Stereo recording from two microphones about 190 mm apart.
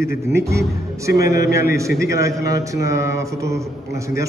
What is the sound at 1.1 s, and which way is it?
Speech, 55° left (ahead or behind).